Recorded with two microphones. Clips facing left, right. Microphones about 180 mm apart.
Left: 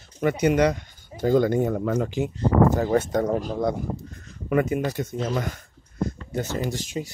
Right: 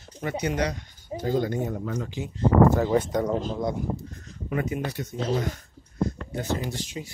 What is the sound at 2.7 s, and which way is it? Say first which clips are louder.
Speech: left 1 dB; 45° left (ahead or behind).